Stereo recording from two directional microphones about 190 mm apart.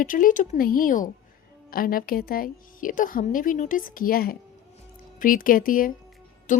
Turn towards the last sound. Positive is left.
turn(degrees=45)  # may be behind; listen again after turning